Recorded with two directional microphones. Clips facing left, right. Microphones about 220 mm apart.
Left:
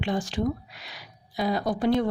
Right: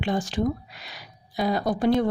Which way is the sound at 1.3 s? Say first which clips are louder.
Right 2 dB; 45° right (ahead or behind).